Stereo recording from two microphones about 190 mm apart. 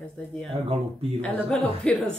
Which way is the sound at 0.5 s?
30° right (ahead or behind).